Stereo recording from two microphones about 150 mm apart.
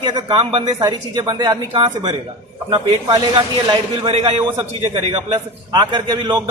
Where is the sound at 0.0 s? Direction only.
30° right (ahead or behind).